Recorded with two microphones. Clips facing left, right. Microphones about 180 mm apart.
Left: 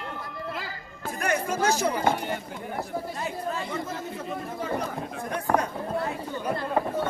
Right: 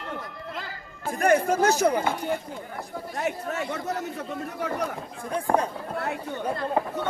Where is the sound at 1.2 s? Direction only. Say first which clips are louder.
Right 5 dB; 55° right (ahead or behind).